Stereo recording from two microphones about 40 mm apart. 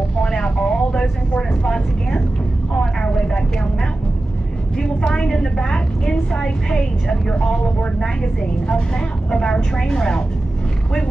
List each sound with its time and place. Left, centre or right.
0.2 s vehicle: left
1.6 s a woman's voice: left
3.0 s vehicle: left
4.7 s a woman's voice: left